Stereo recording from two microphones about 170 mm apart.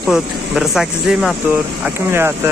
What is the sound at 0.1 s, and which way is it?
Speech, centre (ahead or behind).